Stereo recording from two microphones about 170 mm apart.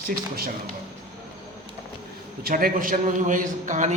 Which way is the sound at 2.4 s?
60° right (ahead or behind).